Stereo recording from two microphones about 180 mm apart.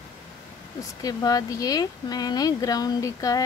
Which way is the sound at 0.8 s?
20° left (ahead or behind).